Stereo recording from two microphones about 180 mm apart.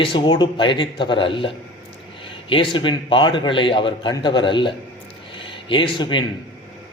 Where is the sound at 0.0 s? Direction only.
25° left (ahead or behind).